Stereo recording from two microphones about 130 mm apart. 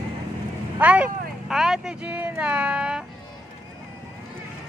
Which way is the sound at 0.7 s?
10° right (ahead or behind).